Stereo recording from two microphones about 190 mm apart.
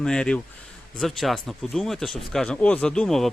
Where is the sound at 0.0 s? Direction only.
5° left (ahead or behind).